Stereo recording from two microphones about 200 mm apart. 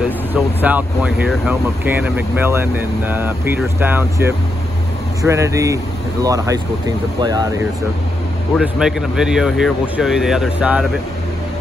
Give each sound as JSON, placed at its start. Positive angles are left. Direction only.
{"t": 0.3, "sound": "speech", "side_deg": -10}
{"t": 8.5, "sound": "speech", "side_deg": -5}